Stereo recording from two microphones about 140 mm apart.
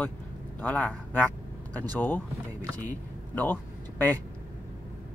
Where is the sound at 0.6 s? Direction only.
10° left (ahead or behind).